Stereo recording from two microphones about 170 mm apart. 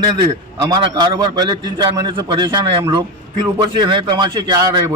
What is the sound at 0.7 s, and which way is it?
A man's voice, 25° right (ahead or behind).